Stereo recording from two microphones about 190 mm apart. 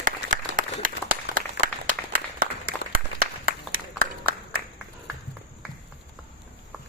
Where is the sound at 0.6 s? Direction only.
45° right (ahead or behind).